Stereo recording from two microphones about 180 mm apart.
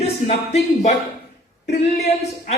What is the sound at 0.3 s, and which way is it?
Speech, 40° left (ahead or behind).